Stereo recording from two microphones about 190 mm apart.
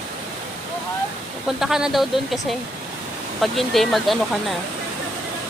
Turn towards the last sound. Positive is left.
turn(degrees=0)  # may be behind; listen again after turning